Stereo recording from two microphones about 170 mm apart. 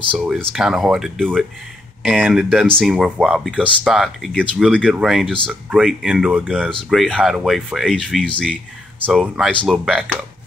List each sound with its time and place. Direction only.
0.1 s speech: 10° right (ahead or behind)